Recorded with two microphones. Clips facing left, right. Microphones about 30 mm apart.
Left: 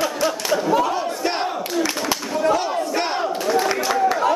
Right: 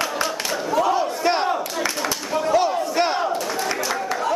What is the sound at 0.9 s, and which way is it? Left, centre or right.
Battle cry, centre.